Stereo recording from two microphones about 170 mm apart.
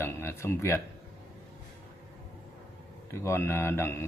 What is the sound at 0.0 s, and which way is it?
Speech, 15° left (ahead or behind).